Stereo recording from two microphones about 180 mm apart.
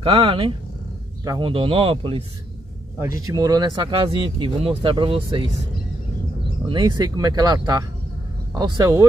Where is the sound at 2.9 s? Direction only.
15° right (ahead or behind).